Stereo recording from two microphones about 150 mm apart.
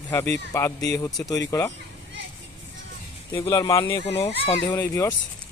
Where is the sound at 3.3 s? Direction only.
20° left (ahead or behind).